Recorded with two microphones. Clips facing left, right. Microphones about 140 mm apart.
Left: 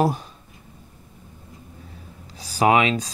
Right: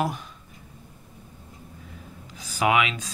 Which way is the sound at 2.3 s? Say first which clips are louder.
Left 5 dB; 35° left (ahead or behind).